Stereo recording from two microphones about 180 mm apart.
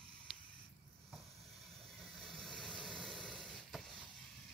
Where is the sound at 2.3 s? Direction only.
5° left (ahead or behind).